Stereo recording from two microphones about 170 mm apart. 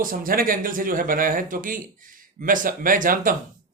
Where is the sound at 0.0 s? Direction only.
55° right (ahead or behind).